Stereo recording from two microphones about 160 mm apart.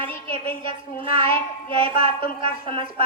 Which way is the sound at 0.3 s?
60° left (ahead or behind).